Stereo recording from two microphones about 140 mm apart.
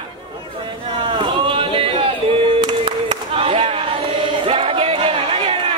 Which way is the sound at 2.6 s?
35° right (ahead or behind).